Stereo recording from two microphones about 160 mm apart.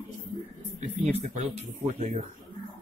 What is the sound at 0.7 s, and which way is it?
Speech, 45° right (ahead or behind).